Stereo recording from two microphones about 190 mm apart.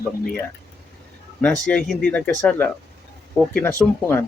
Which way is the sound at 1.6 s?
5° left (ahead or behind).